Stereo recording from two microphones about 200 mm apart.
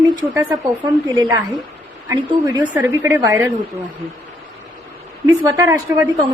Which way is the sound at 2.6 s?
10° right (ahead or behind).